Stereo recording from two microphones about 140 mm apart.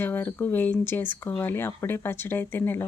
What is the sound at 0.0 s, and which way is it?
Speech, 15° left (ahead or behind).